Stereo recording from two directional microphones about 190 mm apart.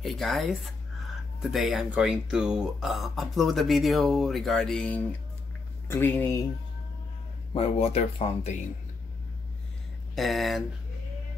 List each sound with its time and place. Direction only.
0.0 s speech: centre (ahead or behind)
7.5 s speech: 30° left (ahead or behind)
10.1 s speech: centre (ahead or behind)